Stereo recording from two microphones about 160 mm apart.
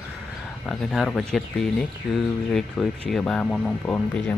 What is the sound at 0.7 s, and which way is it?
Speech, centre (ahead or behind).